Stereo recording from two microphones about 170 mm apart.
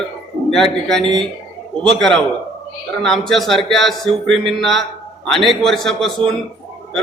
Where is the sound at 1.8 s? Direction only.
5° left (ahead or behind).